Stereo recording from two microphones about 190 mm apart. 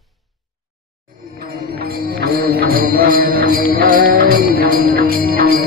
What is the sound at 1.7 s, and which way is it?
Music, 50° right (ahead or behind).